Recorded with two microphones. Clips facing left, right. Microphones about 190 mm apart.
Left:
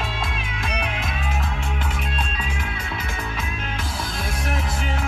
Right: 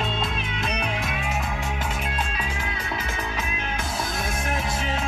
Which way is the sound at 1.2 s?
15° right (ahead or behind).